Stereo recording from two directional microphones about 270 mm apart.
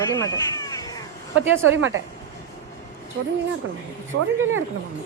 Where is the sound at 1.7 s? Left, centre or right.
Right.